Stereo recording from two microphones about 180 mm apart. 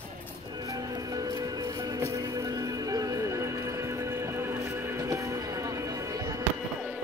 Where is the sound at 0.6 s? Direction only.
20° right (ahead or behind).